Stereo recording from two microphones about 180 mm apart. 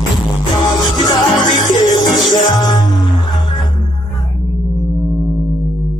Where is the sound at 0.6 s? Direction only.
20° left (ahead or behind).